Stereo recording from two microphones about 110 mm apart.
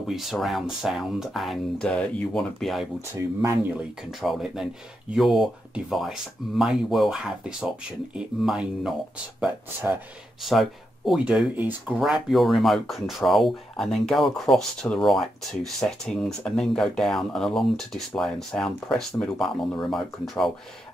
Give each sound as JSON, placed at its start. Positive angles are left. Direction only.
{"t": 0.0, "sound": "speech", "side_deg": 0}
{"t": 1.8, "sound": "speech", "side_deg": 10}
{"t": 4.0, "sound": "speech", "side_deg": 0}
{"t": 9.8, "sound": "speech", "side_deg": -15}
{"t": 10.4, "sound": "speech", "side_deg": 0}
{"t": 12.0, "sound": "speech", "side_deg": 0}